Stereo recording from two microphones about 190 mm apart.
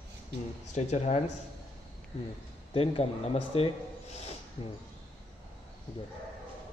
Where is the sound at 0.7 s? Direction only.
35° left (ahead or behind).